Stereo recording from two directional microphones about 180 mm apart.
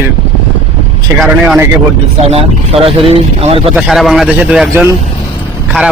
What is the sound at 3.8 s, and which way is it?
A man's voice, centre (ahead or behind).